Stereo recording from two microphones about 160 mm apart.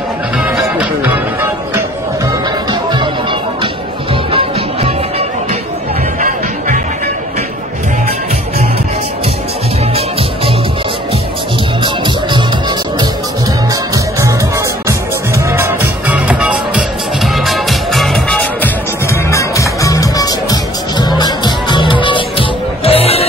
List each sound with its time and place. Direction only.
0.4 s music: 5° right (ahead or behind)
2.7 s music: 30° right (ahead or behind)
4.1 s music: 35° right (ahead or behind)
11.8 s music: 30° right (ahead or behind)
14.9 s music: 15° right (ahead or behind); by 23.2 s 40° left (ahead or behind)